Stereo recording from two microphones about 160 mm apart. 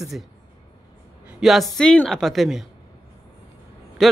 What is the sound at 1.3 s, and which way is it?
A woman's voice, centre (ahead or behind).